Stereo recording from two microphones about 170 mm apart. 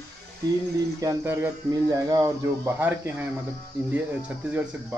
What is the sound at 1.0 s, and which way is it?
Speech, 15° right (ahead or behind).